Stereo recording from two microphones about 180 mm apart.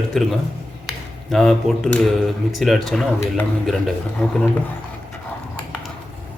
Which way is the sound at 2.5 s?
Centre (ahead or behind).